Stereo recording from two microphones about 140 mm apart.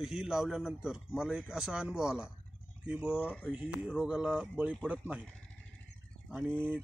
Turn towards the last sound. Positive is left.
turn(degrees=-15)  # may be behind; listen again after turning